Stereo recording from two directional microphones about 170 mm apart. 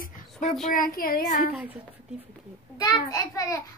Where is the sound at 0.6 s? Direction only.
55° left (ahead or behind).